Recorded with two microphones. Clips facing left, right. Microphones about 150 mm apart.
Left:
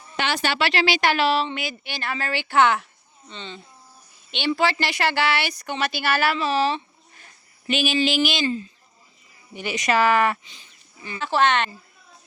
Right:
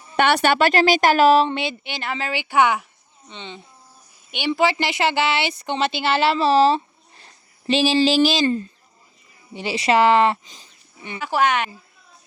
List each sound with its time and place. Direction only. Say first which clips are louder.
0.2 s a woman's voice: right 7 dB; 60° right (ahead or behind); by 1.6 s 40° right (ahead or behind)
1.6 s a woman's voice: right 3 dB; 20° right (ahead or behind); by 8.4 s 35° right (ahead or behind)
8.4 s a woman's voice: right 4 dB; 50° right (ahead or behind)
9.5 s speech: right 4 dB; 30° right (ahead or behind)
10.4 s speech: right 3 dB; 40° right (ahead or behind)
11.2 s a woman's voice: even; 10° right (ahead or behind)